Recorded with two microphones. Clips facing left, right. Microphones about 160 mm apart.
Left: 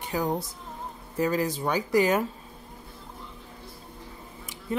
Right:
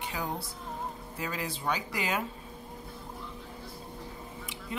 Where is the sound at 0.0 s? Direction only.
45° left (ahead or behind).